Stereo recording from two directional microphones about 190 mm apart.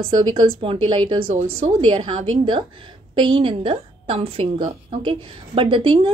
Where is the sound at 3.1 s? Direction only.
25° right (ahead or behind).